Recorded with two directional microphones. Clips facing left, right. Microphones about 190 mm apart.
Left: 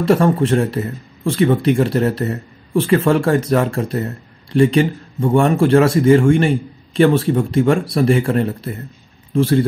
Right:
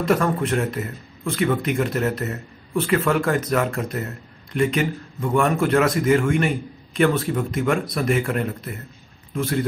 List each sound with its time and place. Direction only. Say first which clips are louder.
0.0 s a man's voice: left 6 dB; 30° left (ahead or behind)